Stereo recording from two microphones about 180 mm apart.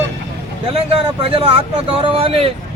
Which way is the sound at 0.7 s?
30° right (ahead or behind).